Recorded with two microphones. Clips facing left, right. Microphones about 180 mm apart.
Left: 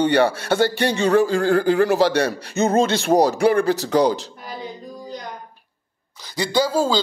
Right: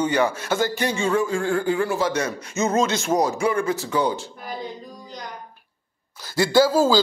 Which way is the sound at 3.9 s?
80° left.